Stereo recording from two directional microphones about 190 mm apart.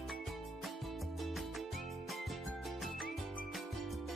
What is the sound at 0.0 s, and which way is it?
Music, centre (ahead or behind).